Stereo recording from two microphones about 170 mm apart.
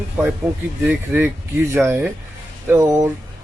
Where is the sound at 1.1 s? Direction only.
15° right (ahead or behind).